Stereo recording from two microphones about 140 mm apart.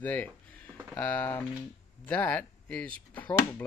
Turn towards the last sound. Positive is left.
turn(degrees=10)  # may be behind; listen again after turning